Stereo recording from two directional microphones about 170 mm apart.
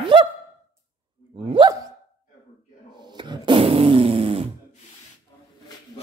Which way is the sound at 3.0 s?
25° right (ahead or behind).